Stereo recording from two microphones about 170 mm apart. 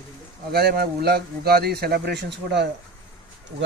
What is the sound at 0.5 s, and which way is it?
A man's voice, 65° right (ahead or behind).